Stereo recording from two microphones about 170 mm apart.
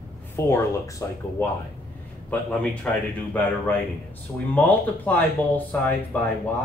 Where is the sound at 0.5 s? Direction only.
15° left (ahead or behind).